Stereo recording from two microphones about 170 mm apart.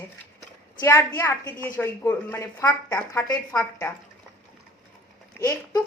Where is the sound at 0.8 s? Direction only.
15° left (ahead or behind).